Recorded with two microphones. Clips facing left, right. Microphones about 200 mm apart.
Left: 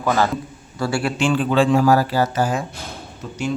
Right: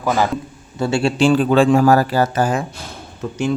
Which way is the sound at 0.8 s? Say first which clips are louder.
Right 4 dB; 25° right (ahead or behind).